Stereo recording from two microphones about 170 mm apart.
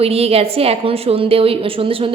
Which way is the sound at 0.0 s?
35° right (ahead or behind).